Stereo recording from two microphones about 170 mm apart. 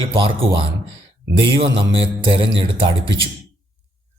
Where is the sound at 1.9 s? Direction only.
30° right (ahead or behind).